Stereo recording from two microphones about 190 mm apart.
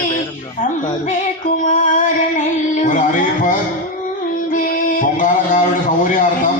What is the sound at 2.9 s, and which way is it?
Speech, 45° left (ahead or behind).